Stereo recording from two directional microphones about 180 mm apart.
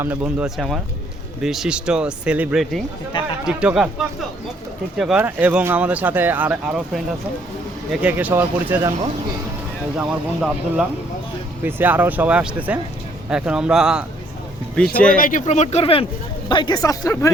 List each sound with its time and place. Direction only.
0.0 s speech: 10° right (ahead or behind)
10.0 s speech: 5° right (ahead or behind)
15.2 s speech: 45° left (ahead or behind); by 17.3 s 15° left (ahead or behind)